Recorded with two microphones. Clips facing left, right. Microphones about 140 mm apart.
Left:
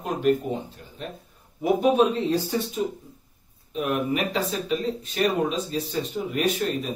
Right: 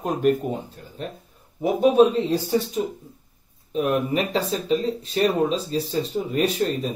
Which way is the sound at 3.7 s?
35° right (ahead or behind).